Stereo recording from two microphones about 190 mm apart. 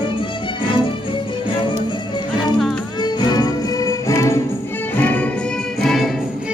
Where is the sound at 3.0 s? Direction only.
20° left (ahead or behind); by 6.1 s centre (ahead or behind).